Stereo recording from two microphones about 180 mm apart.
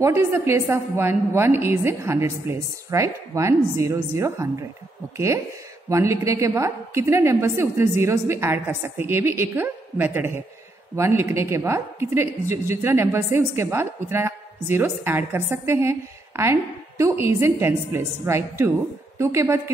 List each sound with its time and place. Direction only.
0.0 s a woman's voice: 15° right (ahead or behind)